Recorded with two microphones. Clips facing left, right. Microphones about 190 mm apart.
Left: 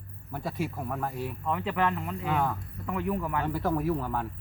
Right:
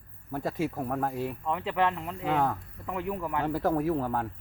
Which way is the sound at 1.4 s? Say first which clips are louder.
Even; 25° right (ahead or behind).